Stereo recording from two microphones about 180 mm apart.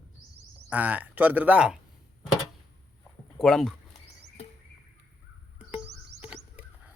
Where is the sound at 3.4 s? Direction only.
5° left (ahead or behind).